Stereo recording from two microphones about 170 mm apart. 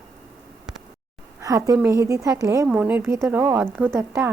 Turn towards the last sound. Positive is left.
turn(degrees=-10)  # may be behind; listen again after turning